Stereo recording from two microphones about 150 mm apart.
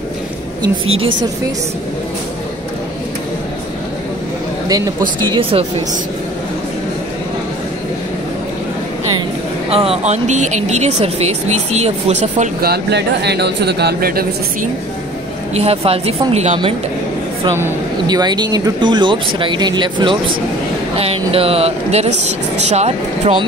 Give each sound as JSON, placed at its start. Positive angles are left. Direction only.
{"t": 4.6, "sound": "speech", "side_deg": -25}
{"t": 9.7, "sound": "speech", "side_deg": -40}
{"t": 12.6, "sound": "speech", "side_deg": -90}
{"t": 15.5, "sound": "speech", "side_deg": -40}
{"t": 18.0, "sound": "speech", "side_deg": -30}